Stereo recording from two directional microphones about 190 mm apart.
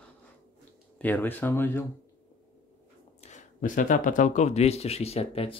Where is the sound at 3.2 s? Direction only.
40° left (ahead or behind).